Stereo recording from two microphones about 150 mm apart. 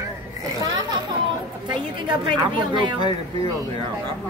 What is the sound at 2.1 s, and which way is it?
A woman's voice, 30° right (ahead or behind).